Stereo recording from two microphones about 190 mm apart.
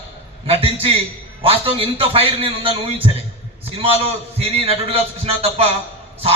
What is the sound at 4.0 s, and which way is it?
A man's voice, 30° right (ahead or behind).